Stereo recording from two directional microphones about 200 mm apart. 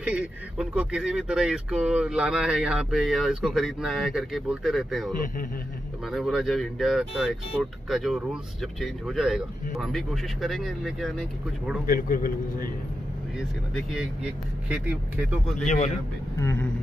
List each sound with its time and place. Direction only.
0.0 s speech: 5° right (ahead or behind)
11.9 s a man's voice: 45° left (ahead or behind)
13.4 s speech: centre (ahead or behind)
15.5 s speech: 35° left (ahead or behind)
16.3 s speech: 15° left (ahead or behind)